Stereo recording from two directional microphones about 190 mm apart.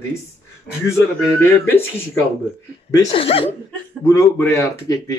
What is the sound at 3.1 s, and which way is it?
Speech, 30° left (ahead or behind).